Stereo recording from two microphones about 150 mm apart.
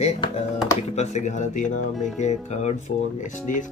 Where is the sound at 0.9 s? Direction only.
50° left (ahead or behind).